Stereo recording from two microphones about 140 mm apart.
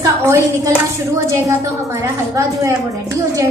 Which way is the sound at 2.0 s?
20° right (ahead or behind).